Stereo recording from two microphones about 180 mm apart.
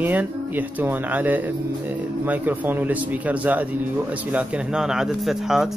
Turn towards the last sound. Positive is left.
turn(degrees=0)  # may be behind; listen again after turning